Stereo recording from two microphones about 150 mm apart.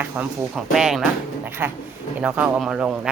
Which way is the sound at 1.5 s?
15° right (ahead or behind).